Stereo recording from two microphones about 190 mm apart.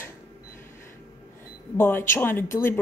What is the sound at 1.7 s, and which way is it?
Speech, 10° left (ahead or behind).